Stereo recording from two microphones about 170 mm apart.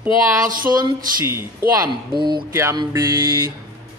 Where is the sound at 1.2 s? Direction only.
15° right (ahead or behind).